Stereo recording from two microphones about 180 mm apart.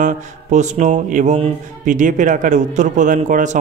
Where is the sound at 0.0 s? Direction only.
40° right (ahead or behind).